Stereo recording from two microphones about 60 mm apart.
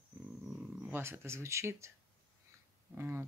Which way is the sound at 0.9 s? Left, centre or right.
Right.